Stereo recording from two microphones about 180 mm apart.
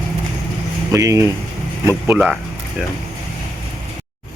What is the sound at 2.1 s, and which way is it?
Speech, 5° right (ahead or behind).